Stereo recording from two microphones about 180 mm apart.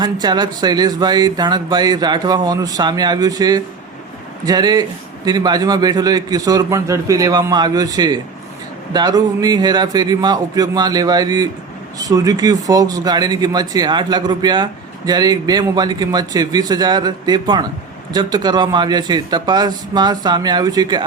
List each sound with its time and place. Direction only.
0.0 s speech: 25° right (ahead or behind)